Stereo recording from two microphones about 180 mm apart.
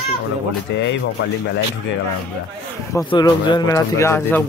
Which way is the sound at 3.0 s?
25° left (ahead or behind).